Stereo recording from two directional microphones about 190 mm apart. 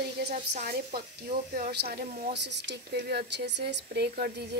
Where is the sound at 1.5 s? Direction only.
50° right (ahead or behind).